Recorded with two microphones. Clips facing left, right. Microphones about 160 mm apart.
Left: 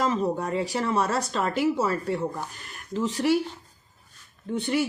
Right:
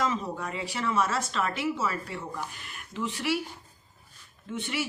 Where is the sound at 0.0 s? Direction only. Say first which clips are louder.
Left 5 dB; 40° left (ahead or behind).